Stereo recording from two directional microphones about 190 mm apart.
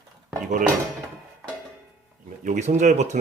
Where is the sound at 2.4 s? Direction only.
40° right (ahead or behind).